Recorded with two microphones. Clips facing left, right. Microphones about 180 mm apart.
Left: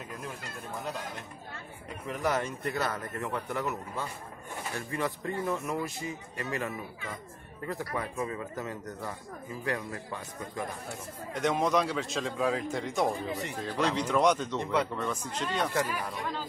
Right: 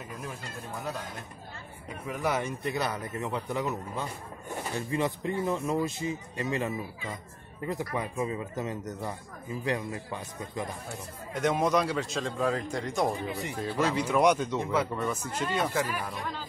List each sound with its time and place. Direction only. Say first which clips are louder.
2.0 s speech: even; 10° right (ahead or behind)
11.3 s speech: right 1 dB; centre (ahead or behind)